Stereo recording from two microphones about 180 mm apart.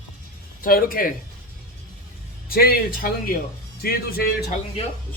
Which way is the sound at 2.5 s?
55° left (ahead or behind).